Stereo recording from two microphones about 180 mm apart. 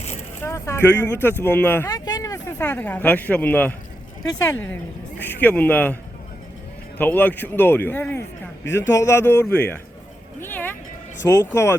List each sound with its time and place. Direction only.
0.4 s a man's voice: 15° left (ahead or behind)
1.9 s speech: 20° left (ahead or behind)
5.2 s a man's voice: 10° left (ahead or behind)
7.0 s a man's voice: 10° left (ahead or behind)